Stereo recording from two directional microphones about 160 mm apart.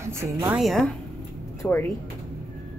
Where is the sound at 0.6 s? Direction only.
Centre (ahead or behind).